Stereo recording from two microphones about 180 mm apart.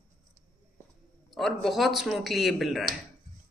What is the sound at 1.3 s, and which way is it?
Speech, centre (ahead or behind).